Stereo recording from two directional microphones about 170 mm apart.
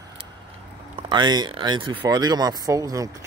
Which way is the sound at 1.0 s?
25° right (ahead or behind).